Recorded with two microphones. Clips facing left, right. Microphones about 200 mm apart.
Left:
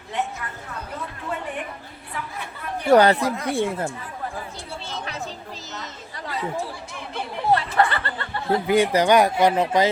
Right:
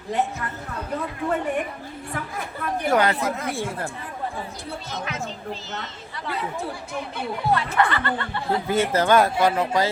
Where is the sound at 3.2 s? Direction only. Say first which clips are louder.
Left 3 dB; centre (ahead or behind).